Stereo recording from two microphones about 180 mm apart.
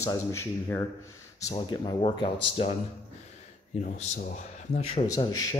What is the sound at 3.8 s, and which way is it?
Speech, 45° left (ahead or behind).